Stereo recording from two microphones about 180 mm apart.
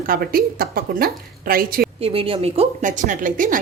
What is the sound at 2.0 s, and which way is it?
A woman's voice, 30° right (ahead or behind).